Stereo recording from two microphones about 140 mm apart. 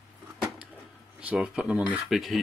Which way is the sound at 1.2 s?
5° right (ahead or behind).